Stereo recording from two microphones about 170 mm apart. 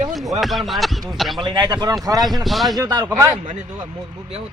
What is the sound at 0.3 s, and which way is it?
Speech, centre (ahead or behind).